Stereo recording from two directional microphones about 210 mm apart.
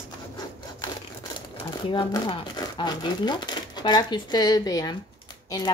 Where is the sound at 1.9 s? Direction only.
20° left (ahead or behind).